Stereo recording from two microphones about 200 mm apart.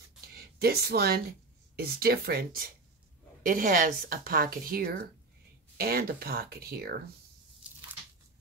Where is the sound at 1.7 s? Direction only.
50° right (ahead or behind).